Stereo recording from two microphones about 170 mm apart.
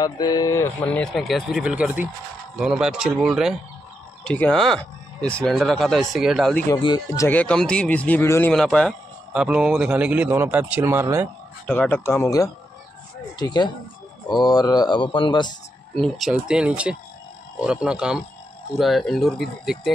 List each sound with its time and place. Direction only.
0.0 s speech: 25° left (ahead or behind); by 6.6 s centre (ahead or behind)
6.7 s speech: 25° left (ahead or behind)
7.2 s speech: 10° left (ahead or behind)
8.5 s speech: 5° left (ahead or behind); by 11.2 s 15° right (ahead or behind)
11.6 s speech: 10° left (ahead or behind); by 15.5 s 25° left (ahead or behind)
15.9 s speech: centre (ahead or behind)